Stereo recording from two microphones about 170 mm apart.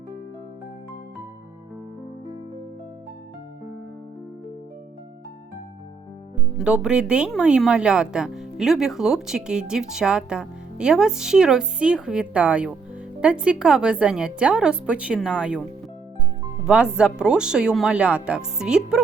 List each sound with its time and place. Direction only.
6.6 s speech: 5° right (ahead or behind)
16.6 s speech: 5° right (ahead or behind)